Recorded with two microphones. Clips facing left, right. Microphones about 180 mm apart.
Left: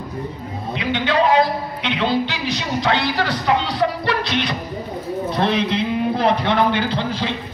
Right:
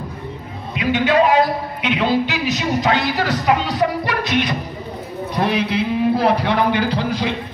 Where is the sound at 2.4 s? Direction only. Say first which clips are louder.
Right 3 dB; 40° right (ahead or behind).